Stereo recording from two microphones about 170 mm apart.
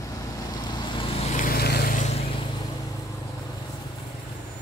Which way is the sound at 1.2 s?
45° left (ahead or behind).